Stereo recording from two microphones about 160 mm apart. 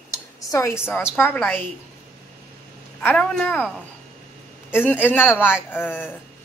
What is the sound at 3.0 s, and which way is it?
Speech, 5° left (ahead or behind).